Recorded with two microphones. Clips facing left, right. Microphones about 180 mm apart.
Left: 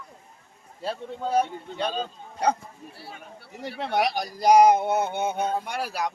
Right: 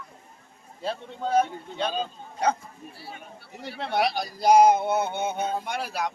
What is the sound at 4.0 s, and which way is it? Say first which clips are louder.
Speech: even; 15° left (ahead or behind).